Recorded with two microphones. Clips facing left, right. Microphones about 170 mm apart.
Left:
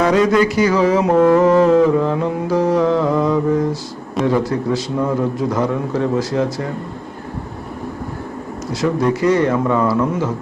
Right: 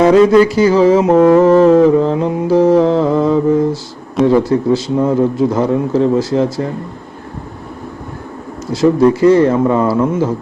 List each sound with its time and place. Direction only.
0.0 s mantra: 30° right (ahead or behind)
8.7 s mantra: 30° right (ahead or behind)